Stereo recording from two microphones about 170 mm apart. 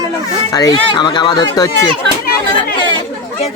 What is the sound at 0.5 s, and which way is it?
Speech, 25° left (ahead or behind).